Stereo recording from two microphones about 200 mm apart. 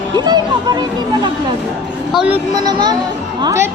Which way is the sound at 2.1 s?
5° right (ahead or behind).